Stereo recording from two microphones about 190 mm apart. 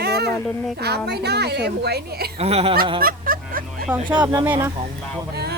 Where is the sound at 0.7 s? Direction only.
60° right (ahead or behind).